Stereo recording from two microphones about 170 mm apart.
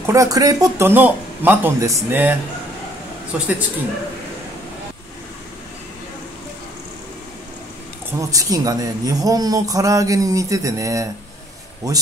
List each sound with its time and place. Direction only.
0.0 s speech: 20° right (ahead or behind)
3.3 s speech: 10° right (ahead or behind)
8.1 s a man's voice: 20° right (ahead or behind)